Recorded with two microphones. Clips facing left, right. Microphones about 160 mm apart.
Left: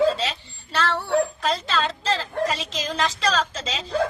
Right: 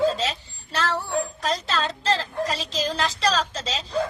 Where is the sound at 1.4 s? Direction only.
40° right (ahead or behind).